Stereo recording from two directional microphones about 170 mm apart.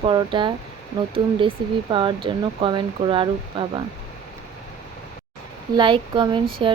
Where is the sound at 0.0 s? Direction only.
30° right (ahead or behind).